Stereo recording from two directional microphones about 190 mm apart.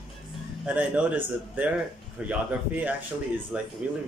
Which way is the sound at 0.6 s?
5° right (ahead or behind).